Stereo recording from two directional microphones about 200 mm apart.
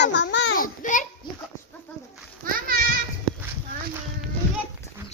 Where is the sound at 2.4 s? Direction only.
45° right (ahead or behind).